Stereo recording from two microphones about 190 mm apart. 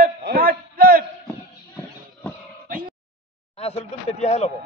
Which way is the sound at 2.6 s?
50° right (ahead or behind).